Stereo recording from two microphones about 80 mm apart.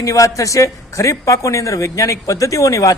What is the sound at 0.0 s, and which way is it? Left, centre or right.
A man's voice, left.